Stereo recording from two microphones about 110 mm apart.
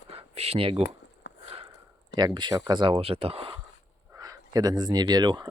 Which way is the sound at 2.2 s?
40° right (ahead or behind).